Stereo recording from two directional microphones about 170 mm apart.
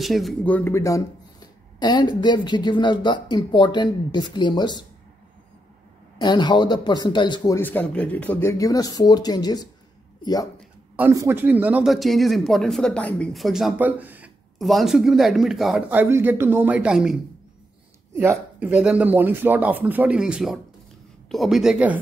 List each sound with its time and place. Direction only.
0.0 s speech: centre (ahead or behind); by 4.8 s 25° left (ahead or behind)
6.1 s speech: 25° left (ahead or behind)
7.5 s speech: 10° left (ahead or behind)
11.0 s speech: 15° right (ahead or behind)
18.6 s speech: 5° right (ahead or behind)